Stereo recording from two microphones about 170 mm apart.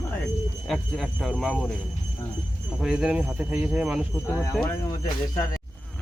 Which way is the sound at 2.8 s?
5° right (ahead or behind).